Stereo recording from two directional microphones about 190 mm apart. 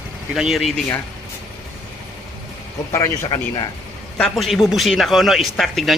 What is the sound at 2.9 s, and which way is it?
Speech, 20° left (ahead or behind).